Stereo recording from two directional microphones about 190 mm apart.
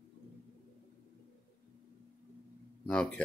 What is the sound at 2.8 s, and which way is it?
Speech, 5° left (ahead or behind).